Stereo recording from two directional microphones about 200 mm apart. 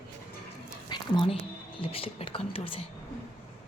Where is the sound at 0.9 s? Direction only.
25° left (ahead or behind).